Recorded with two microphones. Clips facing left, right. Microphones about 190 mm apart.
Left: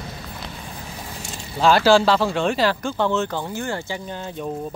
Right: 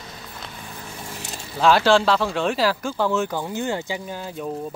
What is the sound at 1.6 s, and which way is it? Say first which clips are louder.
Speech: left 1 dB; centre (ahead or behind).